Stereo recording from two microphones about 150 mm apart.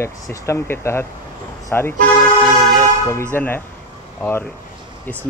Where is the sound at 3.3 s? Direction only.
15° left (ahead or behind).